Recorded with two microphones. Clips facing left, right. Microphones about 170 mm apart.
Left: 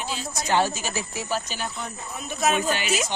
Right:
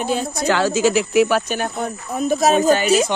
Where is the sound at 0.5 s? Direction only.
90° right; by 3.0 s 40° right (ahead or behind).